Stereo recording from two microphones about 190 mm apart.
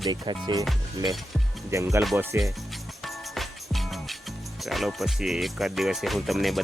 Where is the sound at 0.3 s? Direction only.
25° right (ahead or behind).